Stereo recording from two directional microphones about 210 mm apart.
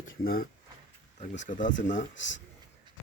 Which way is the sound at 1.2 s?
40° left (ahead or behind).